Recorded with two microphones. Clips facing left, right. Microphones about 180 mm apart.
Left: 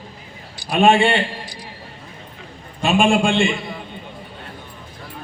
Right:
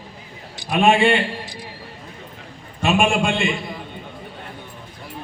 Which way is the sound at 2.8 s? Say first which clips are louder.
Left 2 dB; 30° left (ahead or behind).